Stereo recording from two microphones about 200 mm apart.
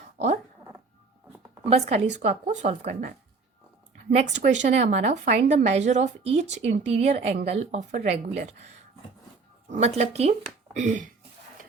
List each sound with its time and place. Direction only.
0.2 s speech: 35° right (ahead or behind)
1.6 s a woman's voice: 30° right (ahead or behind)